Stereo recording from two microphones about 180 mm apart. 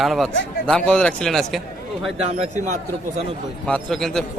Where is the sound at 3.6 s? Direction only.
5° left (ahead or behind).